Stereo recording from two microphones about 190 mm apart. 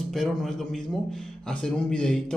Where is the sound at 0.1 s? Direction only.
Centre (ahead or behind).